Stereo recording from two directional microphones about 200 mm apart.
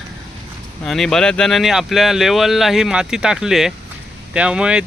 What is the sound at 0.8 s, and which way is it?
Speech, centre (ahead or behind).